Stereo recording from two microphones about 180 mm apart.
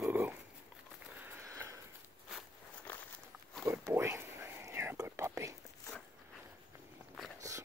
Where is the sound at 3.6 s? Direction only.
15° right (ahead or behind).